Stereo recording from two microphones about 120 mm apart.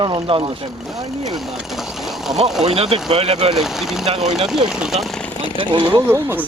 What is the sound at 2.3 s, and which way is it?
Speech, 35° right (ahead or behind).